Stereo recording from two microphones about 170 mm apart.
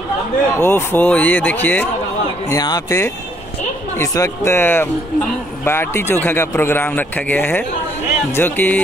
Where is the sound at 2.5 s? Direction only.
20° left (ahead or behind).